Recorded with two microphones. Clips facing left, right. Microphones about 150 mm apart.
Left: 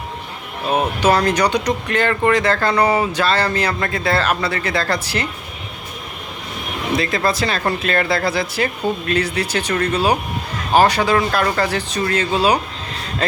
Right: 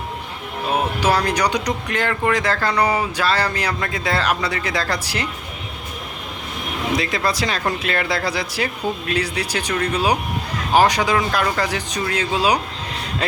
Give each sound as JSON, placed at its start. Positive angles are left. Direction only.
{"t": 1.0, "sound": "speech", "side_deg": -10}
{"t": 2.7, "sound": "a sound", "side_deg": 5}
{"t": 3.2, "sound": "speech", "side_deg": -10}
{"t": 6.9, "sound": "speech", "side_deg": -10}